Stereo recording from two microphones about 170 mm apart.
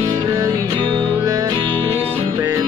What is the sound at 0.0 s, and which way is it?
Music, 20° right (ahead or behind).